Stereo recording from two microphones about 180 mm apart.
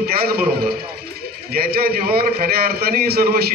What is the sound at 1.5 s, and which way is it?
A man's voice, 60° right (ahead or behind).